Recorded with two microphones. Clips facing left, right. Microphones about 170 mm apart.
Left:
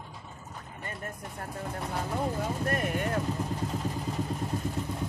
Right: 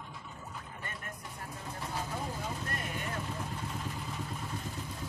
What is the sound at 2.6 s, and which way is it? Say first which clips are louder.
Vehicle: left 9 dB; 55° left (ahead or behind).